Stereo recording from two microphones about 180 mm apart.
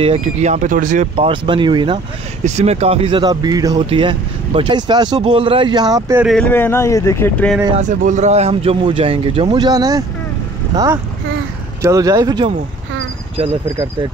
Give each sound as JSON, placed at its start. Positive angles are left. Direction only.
{"t": 0.0, "sound": "speech", "side_deg": -35}
{"t": 1.1, "sound": "speech", "side_deg": -30}
{"t": 2.4, "sound": "speech", "side_deg": -40}
{"t": 6.2, "sound": "speech", "side_deg": 5}
{"t": 8.0, "sound": "speech", "side_deg": -40}
{"t": 11.8, "sound": "speech", "side_deg": -20}